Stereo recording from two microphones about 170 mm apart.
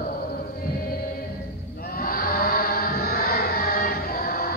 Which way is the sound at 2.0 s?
60° left (ahead or behind).